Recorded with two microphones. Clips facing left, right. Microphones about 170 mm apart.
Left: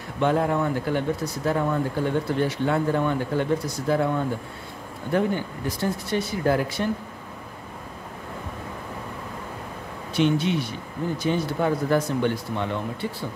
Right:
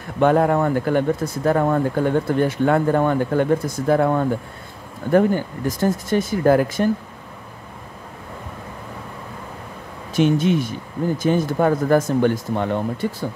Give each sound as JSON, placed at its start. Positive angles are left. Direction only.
{"t": 0.2, "sound": "speech", "side_deg": -55}
{"t": 10.1, "sound": "speech", "side_deg": -45}